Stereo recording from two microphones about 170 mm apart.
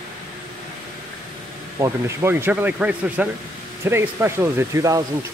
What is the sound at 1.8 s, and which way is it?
Speech, 20° right (ahead or behind).